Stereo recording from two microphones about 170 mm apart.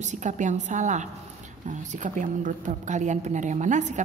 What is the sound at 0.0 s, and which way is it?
A woman's voice, 45° right (ahead or behind).